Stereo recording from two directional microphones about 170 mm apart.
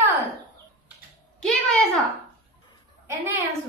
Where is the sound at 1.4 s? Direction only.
Centre (ahead or behind).